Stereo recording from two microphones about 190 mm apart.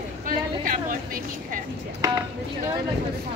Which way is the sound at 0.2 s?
45° right (ahead or behind).